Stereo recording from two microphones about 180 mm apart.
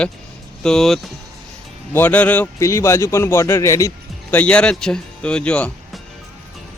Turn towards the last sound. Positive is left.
turn(degrees=5)  # may be behind; listen again after turning